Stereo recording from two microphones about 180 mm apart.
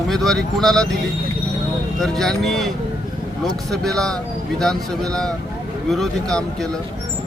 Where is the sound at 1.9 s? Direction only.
Centre (ahead or behind).